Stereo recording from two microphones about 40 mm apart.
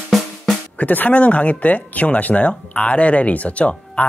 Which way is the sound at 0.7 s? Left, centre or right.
Left.